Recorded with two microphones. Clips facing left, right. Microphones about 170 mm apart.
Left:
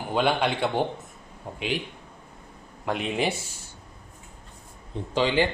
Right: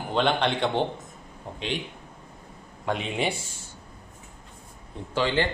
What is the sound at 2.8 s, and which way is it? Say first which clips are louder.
Speech: left 1 dB; centre (ahead or behind).